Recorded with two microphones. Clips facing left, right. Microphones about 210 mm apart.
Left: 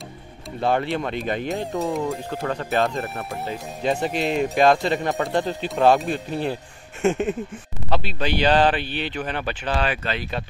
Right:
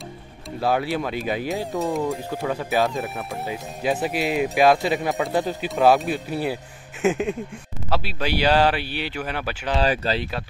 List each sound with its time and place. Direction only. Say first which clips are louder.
0.6 s speech: even; 5° right (ahead or behind)
9.8 s speech: right 4 dB; 35° right (ahead or behind)